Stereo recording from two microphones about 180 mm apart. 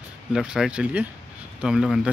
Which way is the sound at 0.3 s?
5° right (ahead or behind).